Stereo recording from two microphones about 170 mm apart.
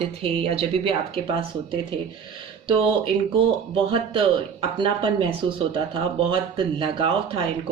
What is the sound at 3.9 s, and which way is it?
Speech, 30° right (ahead or behind).